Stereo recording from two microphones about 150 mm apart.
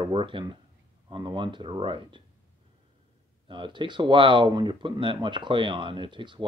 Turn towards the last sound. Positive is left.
turn(degrees=-30)  # may be behind; listen again after turning